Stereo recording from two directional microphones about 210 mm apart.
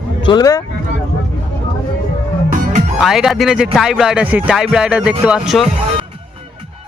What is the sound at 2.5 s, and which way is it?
Music, 35° right (ahead or behind).